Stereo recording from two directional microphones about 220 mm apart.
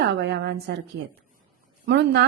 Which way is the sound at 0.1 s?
50° right (ahead or behind).